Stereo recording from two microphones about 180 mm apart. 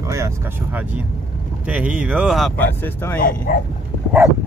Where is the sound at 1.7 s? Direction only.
5° right (ahead or behind); by 3.2 s 10° left (ahead or behind).